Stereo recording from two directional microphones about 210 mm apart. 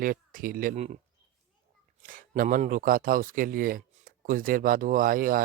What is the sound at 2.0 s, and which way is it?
Speech, 40° right (ahead or behind).